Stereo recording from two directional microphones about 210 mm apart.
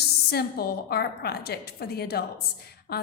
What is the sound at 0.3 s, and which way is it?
A woman's voice, 50° left (ahead or behind).